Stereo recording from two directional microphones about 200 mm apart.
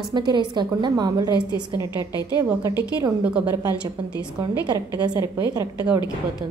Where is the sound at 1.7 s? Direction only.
20° left (ahead or behind).